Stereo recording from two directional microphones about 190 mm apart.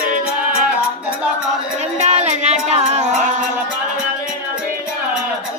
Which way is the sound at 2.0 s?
35° right (ahead or behind).